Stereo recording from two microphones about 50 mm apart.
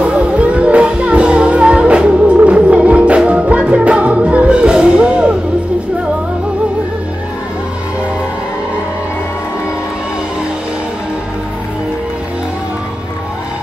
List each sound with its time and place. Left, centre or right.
0.0 s music: right